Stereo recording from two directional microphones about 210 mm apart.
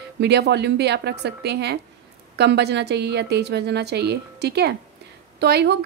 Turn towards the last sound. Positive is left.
turn(degrees=-55)  # may be behind; listen again after turning